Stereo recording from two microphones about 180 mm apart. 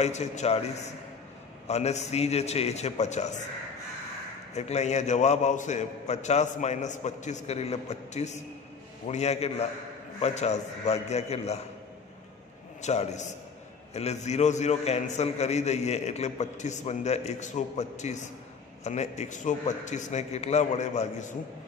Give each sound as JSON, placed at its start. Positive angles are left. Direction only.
{"t": 0.0, "sound": "a man's voice", "side_deg": 40}
{"t": 4.6, "sound": "a man's voice", "side_deg": 40}
{"t": 12.8, "sound": "a man's voice", "side_deg": 40}